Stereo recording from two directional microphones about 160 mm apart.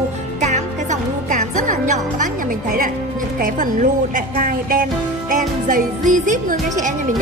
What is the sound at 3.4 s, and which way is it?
Speech, 55° right (ahead or behind).